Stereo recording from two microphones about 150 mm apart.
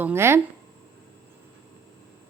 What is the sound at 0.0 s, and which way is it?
Speech, 15° right (ahead or behind).